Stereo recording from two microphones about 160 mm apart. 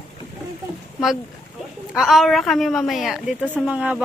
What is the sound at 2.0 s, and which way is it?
A woman's voice, centre (ahead or behind).